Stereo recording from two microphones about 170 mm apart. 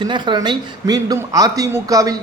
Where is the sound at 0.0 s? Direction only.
25° right (ahead or behind).